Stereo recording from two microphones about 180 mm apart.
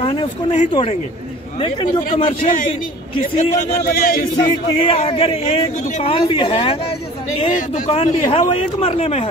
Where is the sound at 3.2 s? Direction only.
40° left (ahead or behind).